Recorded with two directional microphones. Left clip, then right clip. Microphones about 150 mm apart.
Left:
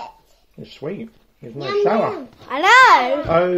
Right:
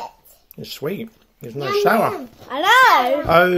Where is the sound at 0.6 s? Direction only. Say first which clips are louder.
Right 3 dB; 35° right (ahead or behind).